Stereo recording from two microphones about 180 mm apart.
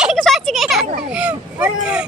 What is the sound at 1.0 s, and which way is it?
Speech, 5° right (ahead or behind).